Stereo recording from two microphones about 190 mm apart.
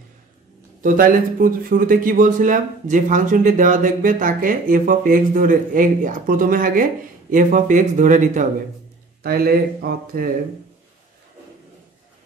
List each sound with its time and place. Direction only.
0.8 s speech: 45° right (ahead or behind)
9.2 s speech: 55° right (ahead or behind)